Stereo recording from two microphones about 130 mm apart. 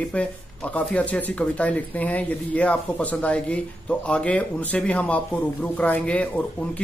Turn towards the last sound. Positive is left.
turn(degrees=10)  # may be behind; listen again after turning